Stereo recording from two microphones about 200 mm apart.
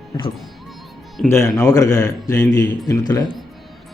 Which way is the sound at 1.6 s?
15° left (ahead or behind).